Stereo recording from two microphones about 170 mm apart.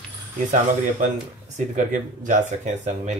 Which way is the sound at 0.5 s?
50° right (ahead or behind).